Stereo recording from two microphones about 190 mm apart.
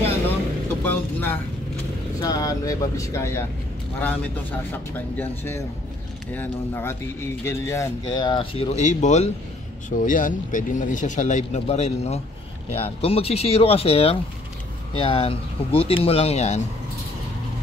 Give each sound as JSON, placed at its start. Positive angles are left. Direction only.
{"t": 0.8, "sound": "speech", "side_deg": 10}
{"t": 4.9, "sound": "speech", "side_deg": 10}